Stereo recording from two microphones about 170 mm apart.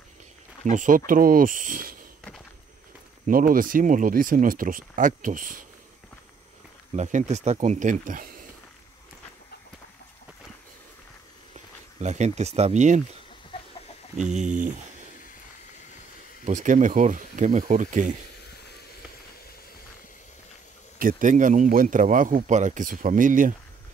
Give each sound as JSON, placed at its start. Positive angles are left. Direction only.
{"t": 0.7, "sound": "speech", "side_deg": -50}
{"t": 3.3, "sound": "speech", "side_deg": -55}
{"t": 6.9, "sound": "speech", "side_deg": -45}
{"t": 11.5, "sound": "speech", "side_deg": -45}
{"t": 16.4, "sound": "speech", "side_deg": -45}
{"t": 21.0, "sound": "speech", "side_deg": -50}